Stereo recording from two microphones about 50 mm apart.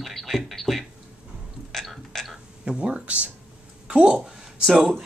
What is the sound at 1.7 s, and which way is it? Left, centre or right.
Burping, centre.